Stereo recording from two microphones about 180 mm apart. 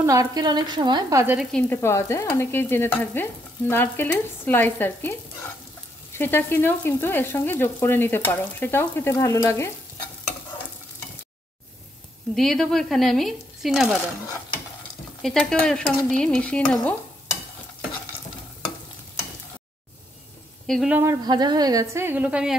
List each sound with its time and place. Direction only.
0.0 s speech: 20° right (ahead or behind)
1.2 s speech: 5° right (ahead or behind)
1.5 s frying: 15° left (ahead or behind)
6.1 s frying: 10° left (ahead or behind)
12.4 s stir: centre (ahead or behind)
15.2 s stir: 5° left (ahead or behind)
20.6 s speech: centre (ahead or behind)
20.9 s speech: 15° right (ahead or behind)